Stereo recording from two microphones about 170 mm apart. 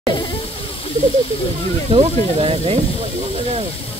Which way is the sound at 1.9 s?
35° right (ahead or behind).